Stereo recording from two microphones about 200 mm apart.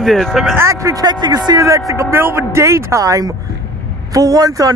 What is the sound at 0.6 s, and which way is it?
A man's voice, 15° right (ahead or behind).